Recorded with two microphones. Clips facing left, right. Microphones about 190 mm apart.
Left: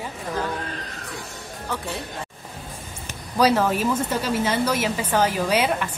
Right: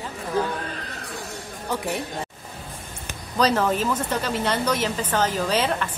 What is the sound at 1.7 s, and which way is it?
Speech, 15° right (ahead or behind).